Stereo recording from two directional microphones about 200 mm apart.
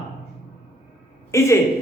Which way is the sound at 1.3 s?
15° left (ahead or behind).